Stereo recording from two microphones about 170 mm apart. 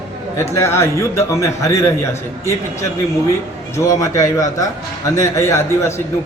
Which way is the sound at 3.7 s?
20° left (ahead or behind).